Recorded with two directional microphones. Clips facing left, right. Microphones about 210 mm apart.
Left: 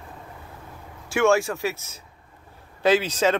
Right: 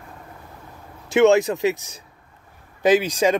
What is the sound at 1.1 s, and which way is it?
Speech, 20° right (ahead or behind).